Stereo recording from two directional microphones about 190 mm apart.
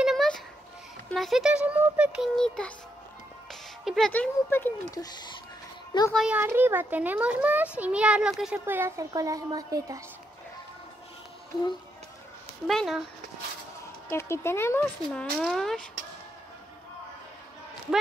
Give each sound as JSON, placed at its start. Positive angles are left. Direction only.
{"t": 0.0, "sound": "a sound", "side_deg": 0}
{"t": 1.1, "sound": "child singing", "side_deg": 0}
{"t": 3.8, "sound": "speech", "side_deg": 0}
{"t": 6.1, "sound": "a child's voice", "side_deg": -5}
{"t": 12.6, "sound": "child singing", "side_deg": 0}
{"t": 14.0, "sound": "speech", "side_deg": 15}
{"t": 15.0, "sound": "child singing", "side_deg": 5}